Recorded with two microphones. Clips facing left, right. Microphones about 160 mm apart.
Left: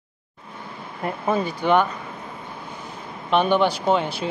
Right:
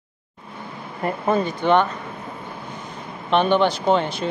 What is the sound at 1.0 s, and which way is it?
Speech, 5° left (ahead or behind).